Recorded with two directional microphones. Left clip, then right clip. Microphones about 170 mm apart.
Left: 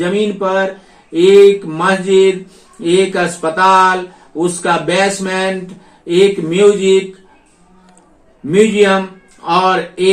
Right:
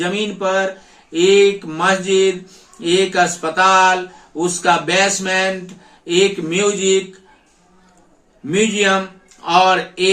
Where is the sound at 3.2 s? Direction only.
25° right (ahead or behind).